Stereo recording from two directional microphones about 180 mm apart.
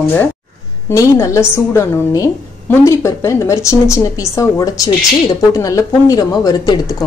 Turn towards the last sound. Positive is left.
turn(degrees=20)  # may be behind; listen again after turning